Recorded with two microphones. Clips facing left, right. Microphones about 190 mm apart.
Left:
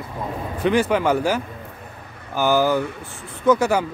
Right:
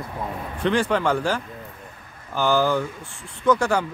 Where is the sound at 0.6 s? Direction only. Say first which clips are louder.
Left 3 dB; 10° left (ahead or behind).